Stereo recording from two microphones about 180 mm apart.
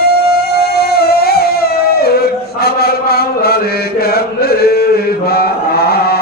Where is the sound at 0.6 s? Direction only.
60° left (ahead or behind).